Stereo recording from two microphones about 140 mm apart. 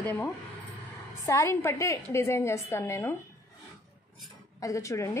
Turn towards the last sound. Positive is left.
turn(degrees=20)  # may be behind; listen again after turning